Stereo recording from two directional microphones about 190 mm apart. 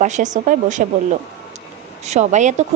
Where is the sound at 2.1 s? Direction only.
40° right (ahead or behind).